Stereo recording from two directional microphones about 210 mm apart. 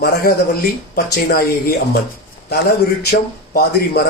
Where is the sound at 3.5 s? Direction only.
50° left (ahead or behind).